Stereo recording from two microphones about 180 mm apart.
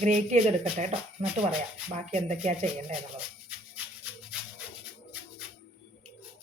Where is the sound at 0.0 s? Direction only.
40° right (ahead or behind).